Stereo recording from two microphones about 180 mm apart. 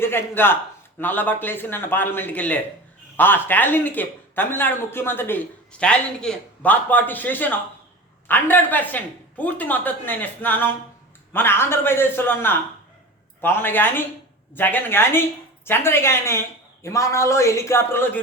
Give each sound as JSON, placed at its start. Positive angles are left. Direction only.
{"t": 0.0, "sound": "a man's voice", "side_deg": 10}